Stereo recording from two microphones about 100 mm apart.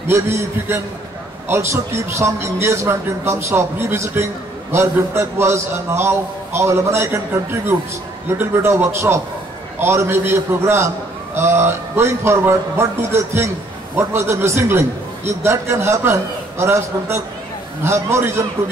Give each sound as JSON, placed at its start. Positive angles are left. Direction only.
{"t": 0.0, "sound": "a man's voice", "side_deg": -25}